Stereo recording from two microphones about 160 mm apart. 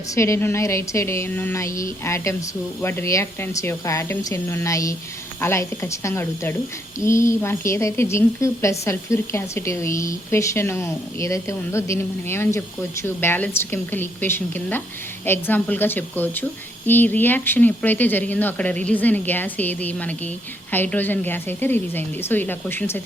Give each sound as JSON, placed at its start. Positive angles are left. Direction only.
{"t": 0.1, "sound": "a woman's voice", "side_deg": 15}